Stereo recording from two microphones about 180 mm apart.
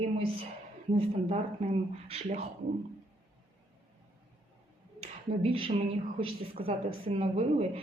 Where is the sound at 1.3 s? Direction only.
30° right (ahead or behind).